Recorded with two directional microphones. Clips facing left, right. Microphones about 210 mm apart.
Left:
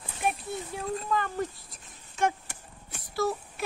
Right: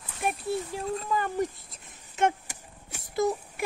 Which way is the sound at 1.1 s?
15° right (ahead or behind).